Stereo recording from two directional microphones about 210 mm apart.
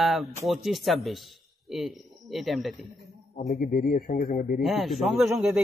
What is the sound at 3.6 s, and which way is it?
Speech, 45° left (ahead or behind).